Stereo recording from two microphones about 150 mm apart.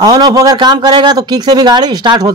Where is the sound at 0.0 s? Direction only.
25° right (ahead or behind).